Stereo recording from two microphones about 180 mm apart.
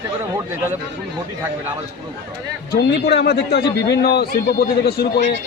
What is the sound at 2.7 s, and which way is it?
A man's voice, 65° left (ahead or behind).